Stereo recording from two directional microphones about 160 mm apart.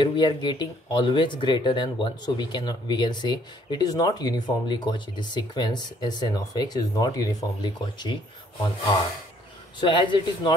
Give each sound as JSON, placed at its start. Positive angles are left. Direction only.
{"t": 0.0, "sound": "speech", "side_deg": 30}
{"t": 9.8, "sound": "a man's voice", "side_deg": 30}